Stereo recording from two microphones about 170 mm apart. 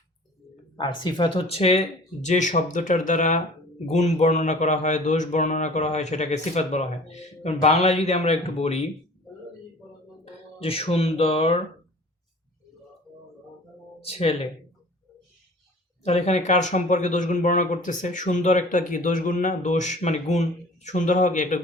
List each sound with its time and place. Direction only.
0.8 s speech: 25° left (ahead or behind)
10.6 s speech: 35° left (ahead or behind)
14.0 s speech: 35° left (ahead or behind)
16.0 s speech: 40° left (ahead or behind)